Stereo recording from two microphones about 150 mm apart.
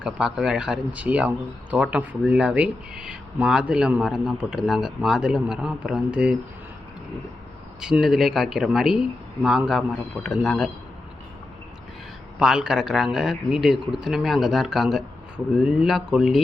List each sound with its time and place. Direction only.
0.0 s speech: 5° right (ahead or behind)
7.8 s speech: 5° right (ahead or behind)
12.4 s speech: 5° right (ahead or behind)